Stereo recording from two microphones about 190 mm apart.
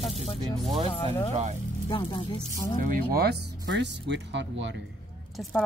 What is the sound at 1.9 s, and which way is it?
Speech, 25° left (ahead or behind).